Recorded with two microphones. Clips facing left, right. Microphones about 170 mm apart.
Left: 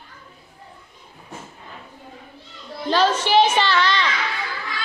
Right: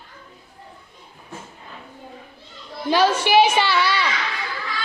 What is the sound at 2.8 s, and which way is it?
A woman's voice, 10° right (ahead or behind).